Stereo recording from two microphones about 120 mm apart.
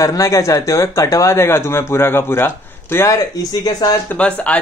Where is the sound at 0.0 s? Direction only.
25° left (ahead or behind).